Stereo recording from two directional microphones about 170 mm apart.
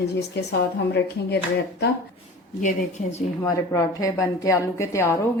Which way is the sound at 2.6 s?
40° left (ahead or behind).